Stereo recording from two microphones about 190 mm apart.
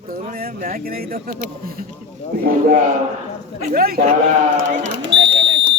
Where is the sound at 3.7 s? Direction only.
50° right (ahead or behind).